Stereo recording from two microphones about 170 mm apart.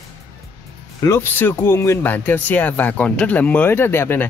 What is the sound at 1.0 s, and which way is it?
Speech, 15° left (ahead or behind).